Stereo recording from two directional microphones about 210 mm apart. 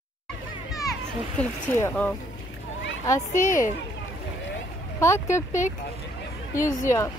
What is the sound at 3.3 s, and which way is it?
Speech, 40° left (ahead or behind).